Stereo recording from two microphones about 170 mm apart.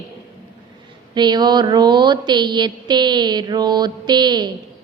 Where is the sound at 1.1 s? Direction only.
25° right (ahead or behind).